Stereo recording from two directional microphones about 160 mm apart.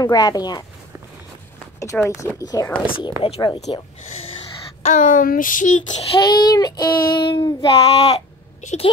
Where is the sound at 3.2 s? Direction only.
35° left (ahead or behind); by 5.7 s 55° left (ahead or behind).